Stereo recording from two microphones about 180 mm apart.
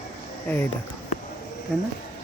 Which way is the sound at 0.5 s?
10° left (ahead or behind).